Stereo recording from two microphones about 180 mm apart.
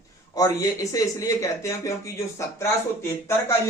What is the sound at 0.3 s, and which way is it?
Speech, 20° left (ahead or behind).